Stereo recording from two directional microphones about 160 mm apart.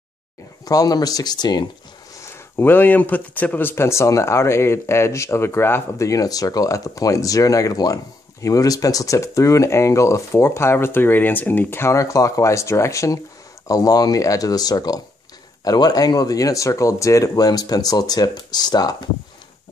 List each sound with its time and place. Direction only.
0.7 s speech: 25° left (ahead or behind)
2.2 s speech: 15° left (ahead or behind)